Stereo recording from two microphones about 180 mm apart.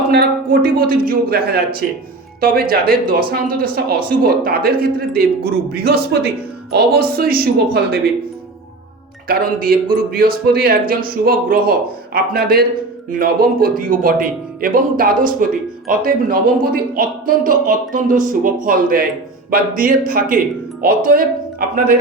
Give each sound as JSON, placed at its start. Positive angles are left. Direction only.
{"t": 0.1, "sound": "speech", "side_deg": -60}
{"t": 9.2, "sound": "speech", "side_deg": -55}